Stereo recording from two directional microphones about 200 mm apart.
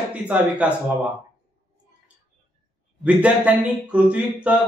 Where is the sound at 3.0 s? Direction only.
5° right (ahead or behind).